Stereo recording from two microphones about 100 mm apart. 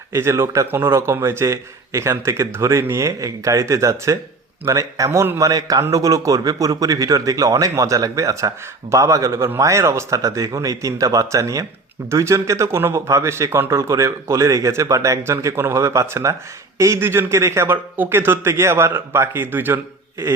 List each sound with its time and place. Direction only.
0.1 s speech: 25° right (ahead or behind)